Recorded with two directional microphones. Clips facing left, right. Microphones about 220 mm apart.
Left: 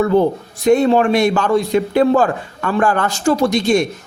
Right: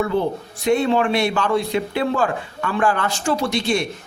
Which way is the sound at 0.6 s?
40° left (ahead or behind).